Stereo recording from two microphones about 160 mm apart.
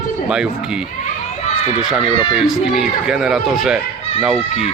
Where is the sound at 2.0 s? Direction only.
35° left (ahead or behind).